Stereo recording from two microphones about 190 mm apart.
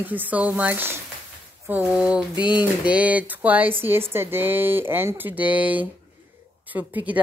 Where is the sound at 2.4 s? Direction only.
25° left (ahead or behind).